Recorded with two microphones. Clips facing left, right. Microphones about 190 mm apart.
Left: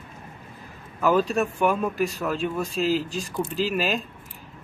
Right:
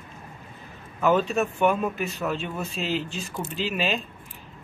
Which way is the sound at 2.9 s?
35° left (ahead or behind).